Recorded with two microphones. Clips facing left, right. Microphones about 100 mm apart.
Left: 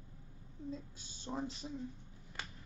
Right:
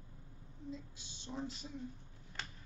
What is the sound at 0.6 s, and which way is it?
Speech, 40° left (ahead or behind).